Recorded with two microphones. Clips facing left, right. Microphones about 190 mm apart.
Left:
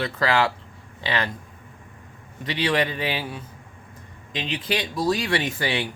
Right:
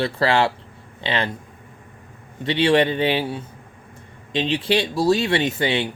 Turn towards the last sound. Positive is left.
turn(degrees=-25)  # may be behind; listen again after turning